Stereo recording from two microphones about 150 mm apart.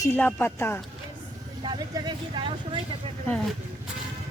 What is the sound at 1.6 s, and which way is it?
Vehicle, 30° right (ahead or behind).